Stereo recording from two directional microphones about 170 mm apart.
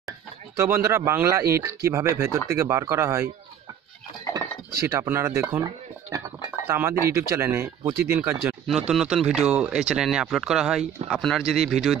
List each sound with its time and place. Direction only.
0.6 s speech: 15° right (ahead or behind)
4.8 s speech: 15° right (ahead or behind)
6.7 s speech: 15° right (ahead or behind)
8.6 s speech: centre (ahead or behind)